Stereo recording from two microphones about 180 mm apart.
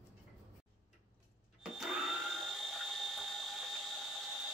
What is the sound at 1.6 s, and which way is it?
Drill, centre (ahead or behind).